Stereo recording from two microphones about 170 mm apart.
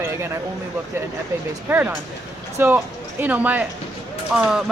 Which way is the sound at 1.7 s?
10° right (ahead or behind).